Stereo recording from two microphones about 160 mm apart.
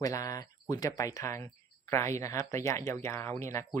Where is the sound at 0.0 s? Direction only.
20° left (ahead or behind).